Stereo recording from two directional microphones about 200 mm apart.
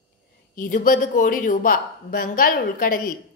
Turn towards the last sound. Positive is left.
turn(degrees=45)  # may be behind; listen again after turning